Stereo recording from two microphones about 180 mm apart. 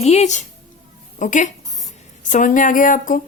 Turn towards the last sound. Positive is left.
turn(degrees=50)  # may be behind; listen again after turning